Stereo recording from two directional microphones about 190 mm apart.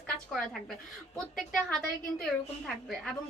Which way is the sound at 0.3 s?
Centre (ahead or behind).